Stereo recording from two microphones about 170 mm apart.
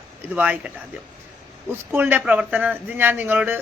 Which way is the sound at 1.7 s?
10° right (ahead or behind).